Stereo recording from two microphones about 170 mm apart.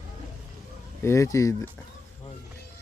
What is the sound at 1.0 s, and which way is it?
Speech, 20° left (ahead or behind).